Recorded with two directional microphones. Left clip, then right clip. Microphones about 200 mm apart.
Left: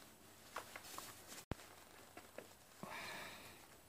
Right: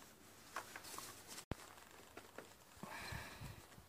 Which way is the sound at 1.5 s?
Centre (ahead or behind).